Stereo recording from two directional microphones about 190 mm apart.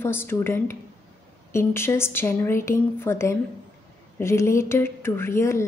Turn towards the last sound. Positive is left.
turn(degrees=15)  # may be behind; listen again after turning